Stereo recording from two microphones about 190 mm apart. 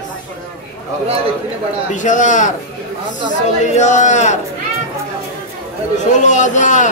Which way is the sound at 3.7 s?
40° left (ahead or behind).